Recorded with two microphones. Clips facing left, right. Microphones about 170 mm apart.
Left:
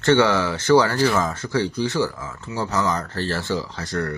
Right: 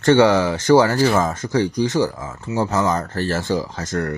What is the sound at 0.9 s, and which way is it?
Speech, 45° right (ahead or behind).